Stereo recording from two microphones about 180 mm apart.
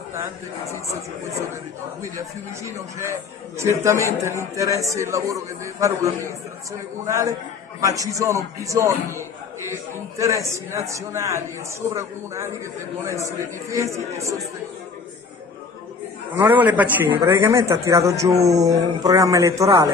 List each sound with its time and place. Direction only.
2.1 s a man's voice: 15° right (ahead or behind)
16.3 s a man's voice: 10° right (ahead or behind)